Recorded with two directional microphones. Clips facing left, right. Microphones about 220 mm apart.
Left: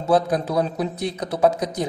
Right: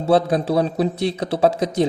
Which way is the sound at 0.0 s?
30° right (ahead or behind).